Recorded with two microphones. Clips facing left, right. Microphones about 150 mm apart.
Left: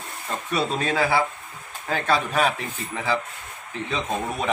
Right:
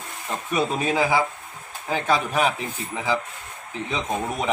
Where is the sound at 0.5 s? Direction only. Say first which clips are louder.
Right 1 dB; 15° right (ahead or behind).